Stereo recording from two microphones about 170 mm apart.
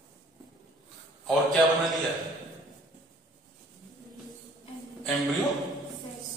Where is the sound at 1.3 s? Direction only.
Centre (ahead or behind).